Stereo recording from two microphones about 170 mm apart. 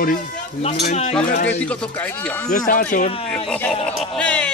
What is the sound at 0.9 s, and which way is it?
Speech, 40° left (ahead or behind).